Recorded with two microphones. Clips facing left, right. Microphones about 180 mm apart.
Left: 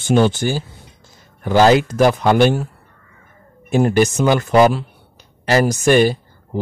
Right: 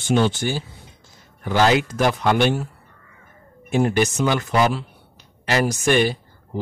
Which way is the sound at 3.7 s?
40° left (ahead or behind).